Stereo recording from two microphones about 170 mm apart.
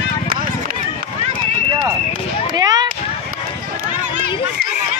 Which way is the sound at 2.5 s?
20° right (ahead or behind).